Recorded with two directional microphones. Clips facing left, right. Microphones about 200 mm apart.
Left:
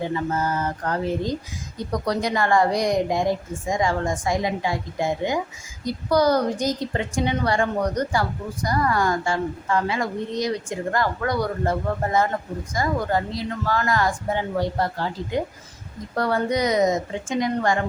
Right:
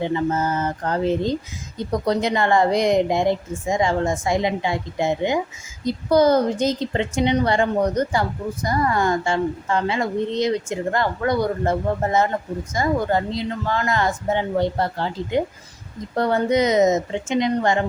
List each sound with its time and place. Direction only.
0.0 s a woman's voice: 20° right (ahead or behind)